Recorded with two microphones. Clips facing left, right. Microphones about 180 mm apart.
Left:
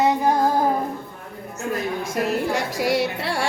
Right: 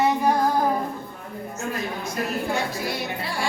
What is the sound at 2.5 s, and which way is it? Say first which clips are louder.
Speech: left 5 dB; 90° left.